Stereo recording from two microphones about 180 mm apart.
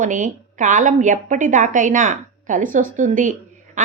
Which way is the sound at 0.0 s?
45° right (ahead or behind).